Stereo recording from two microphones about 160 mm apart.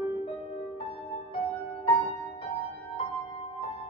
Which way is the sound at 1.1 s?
40° left (ahead or behind).